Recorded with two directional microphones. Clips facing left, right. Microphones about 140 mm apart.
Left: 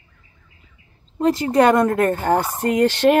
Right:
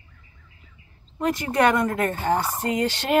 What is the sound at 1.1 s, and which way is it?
Speech, 30° left (ahead or behind).